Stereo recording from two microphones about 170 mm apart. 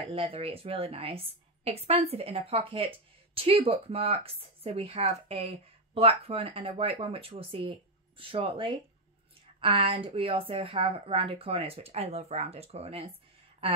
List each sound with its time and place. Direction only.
0.0 s speech: 35° right (ahead or behind)